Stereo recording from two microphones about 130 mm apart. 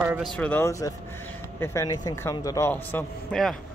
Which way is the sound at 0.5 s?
20° left (ahead or behind).